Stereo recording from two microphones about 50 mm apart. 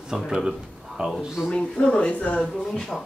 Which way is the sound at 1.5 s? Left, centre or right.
Centre.